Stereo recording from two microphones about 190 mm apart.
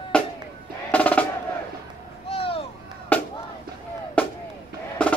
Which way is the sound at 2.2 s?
30° left (ahead or behind).